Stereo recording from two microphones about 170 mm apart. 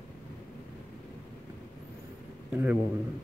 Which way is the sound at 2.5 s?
10° right (ahead or behind).